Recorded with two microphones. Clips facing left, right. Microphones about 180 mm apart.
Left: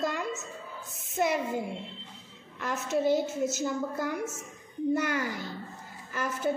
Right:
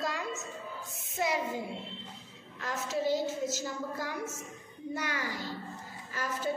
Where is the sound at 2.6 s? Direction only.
55° left (ahead or behind).